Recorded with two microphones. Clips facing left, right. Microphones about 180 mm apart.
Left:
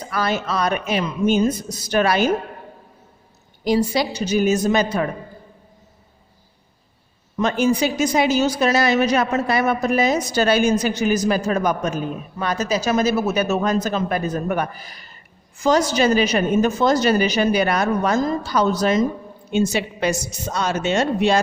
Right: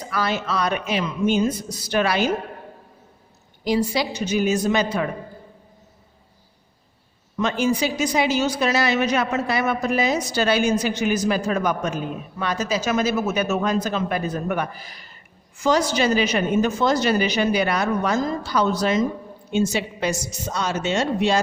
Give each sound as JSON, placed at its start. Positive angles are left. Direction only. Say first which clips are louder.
{"t": 0.1, "sound": "a woman's voice", "louder": "left 2 dB", "side_deg": 45}
{"t": 3.6, "sound": "a woman's voice", "louder": "left 3 dB", "side_deg": 45}
{"t": 7.3, "sound": "a woman's voice", "louder": "left 3 dB", "side_deg": 45}
{"t": 19.5, "sound": "a woman's voice", "louder": "left 2 dB", "side_deg": 60}